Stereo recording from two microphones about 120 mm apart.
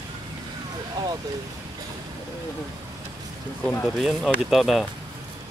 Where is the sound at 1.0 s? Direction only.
35° right (ahead or behind).